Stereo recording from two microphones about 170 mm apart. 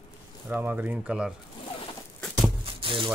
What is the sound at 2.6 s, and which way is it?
Music, 30° right (ahead or behind).